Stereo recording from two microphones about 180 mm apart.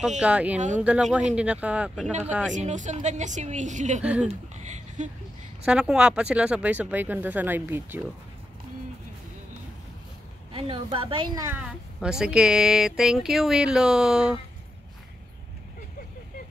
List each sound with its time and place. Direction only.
0.2 s speech: 5° right (ahead or behind)
2.5 s speech: 45° right (ahead or behind)
4.0 s speech: 5° right (ahead or behind)
4.3 s speech: 40° right (ahead or behind)
5.7 s speech: 5° right (ahead or behind)
10.5 s a woman's voice: 30° right (ahead or behind)
11.4 s speech: 5° right (ahead or behind)